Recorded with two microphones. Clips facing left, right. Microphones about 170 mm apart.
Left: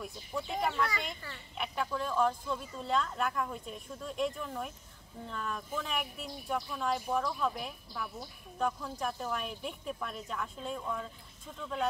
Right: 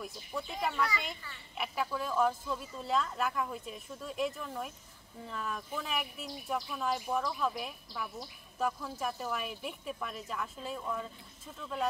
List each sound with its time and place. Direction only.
0.0 s speech: centre (ahead or behind)